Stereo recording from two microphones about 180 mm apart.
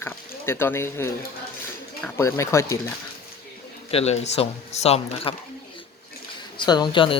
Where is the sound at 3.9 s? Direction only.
35° left (ahead or behind).